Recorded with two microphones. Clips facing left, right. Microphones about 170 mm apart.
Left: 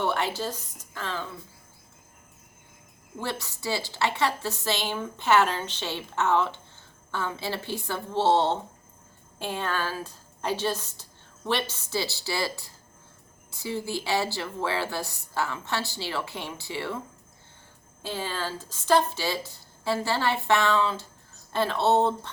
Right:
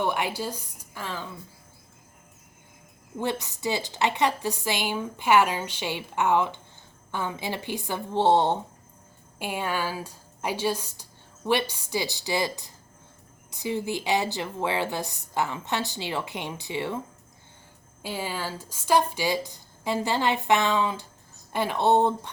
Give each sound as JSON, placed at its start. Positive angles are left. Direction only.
{"t": 0.0, "sound": "a woman's voice", "side_deg": -15}
{"t": 3.2, "sound": "a woman's voice", "side_deg": -20}
{"t": 18.0, "sound": "a woman's voice", "side_deg": -10}